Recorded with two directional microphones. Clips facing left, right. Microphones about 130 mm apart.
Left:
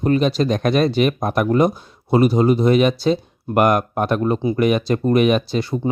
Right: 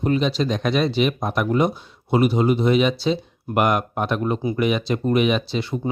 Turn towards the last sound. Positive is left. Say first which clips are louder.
# left 4 dB
turn(degrees=40)  # may be behind; listen again after turning